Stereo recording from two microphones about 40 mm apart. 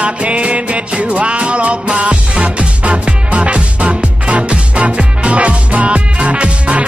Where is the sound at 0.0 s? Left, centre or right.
Right.